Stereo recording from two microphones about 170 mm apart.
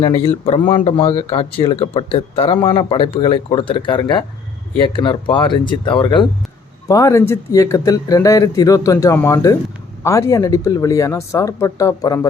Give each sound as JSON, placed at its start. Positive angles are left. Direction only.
{"t": 0.0, "sound": "speech", "side_deg": 35}